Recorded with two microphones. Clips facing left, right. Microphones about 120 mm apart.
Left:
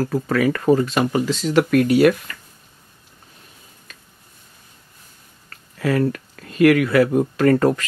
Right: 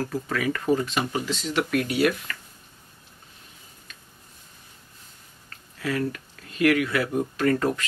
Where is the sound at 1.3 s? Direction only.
45° left (ahead or behind).